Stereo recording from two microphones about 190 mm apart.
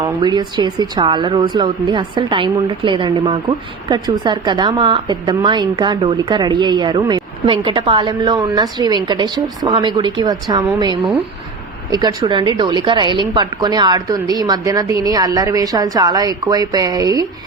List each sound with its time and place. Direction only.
0.0 s a woman's voice: 25° right (ahead or behind)
11.9 s a woman's voice: 20° right (ahead or behind)